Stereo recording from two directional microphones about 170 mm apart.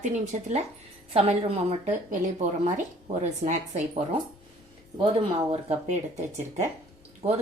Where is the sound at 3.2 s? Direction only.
40° right (ahead or behind).